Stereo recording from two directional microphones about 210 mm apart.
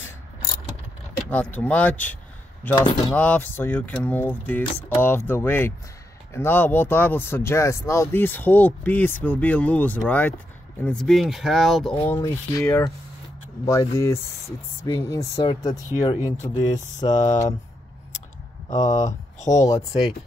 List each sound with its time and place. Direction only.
1.3 s speech: 5° left (ahead or behind)
2.9 s speech: 25° left (ahead or behind)
3.2 s speech: 10° left (ahead or behind)
12.0 s speech: 15° left (ahead or behind)
18.9 s speech: 15° left (ahead or behind)